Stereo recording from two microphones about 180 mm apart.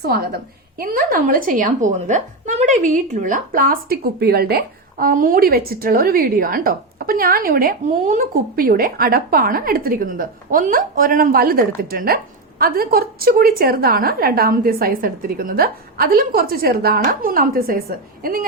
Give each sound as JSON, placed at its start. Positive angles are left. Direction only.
{"t": 0.0, "sound": "a woman's voice", "side_deg": -60}